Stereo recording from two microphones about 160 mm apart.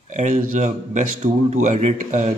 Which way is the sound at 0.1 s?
50° right (ahead or behind).